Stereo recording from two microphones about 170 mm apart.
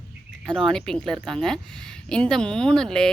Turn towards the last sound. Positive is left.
turn(degrees=5)  # may be behind; listen again after turning